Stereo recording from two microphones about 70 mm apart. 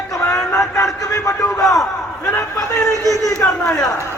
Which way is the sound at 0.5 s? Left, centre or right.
Left.